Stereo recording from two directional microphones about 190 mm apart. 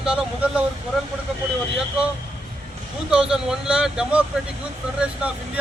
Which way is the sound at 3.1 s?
5° right (ahead or behind).